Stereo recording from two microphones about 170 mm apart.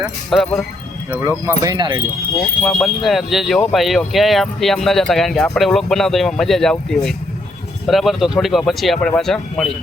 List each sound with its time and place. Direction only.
0.3 s speech: 5° left (ahead or behind)
1.5 s speech: 20° right (ahead or behind)
2.6 s speech: 5° left (ahead or behind)